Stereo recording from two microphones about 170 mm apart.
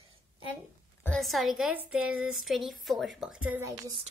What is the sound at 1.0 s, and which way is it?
Speech, centre (ahead or behind).